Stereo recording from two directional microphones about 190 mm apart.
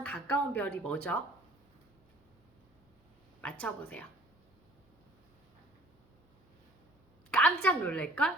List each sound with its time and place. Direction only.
0.0 s a woman's voice: 5° left (ahead or behind)
3.4 s a woman's voice: 5° left (ahead or behind)
7.3 s a woman's voice: 5° left (ahead or behind)